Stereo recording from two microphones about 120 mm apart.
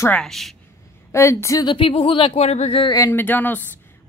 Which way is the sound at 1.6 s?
45° left (ahead or behind).